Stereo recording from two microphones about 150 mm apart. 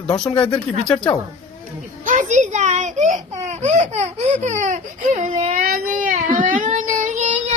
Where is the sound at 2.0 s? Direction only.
55° right (ahead or behind).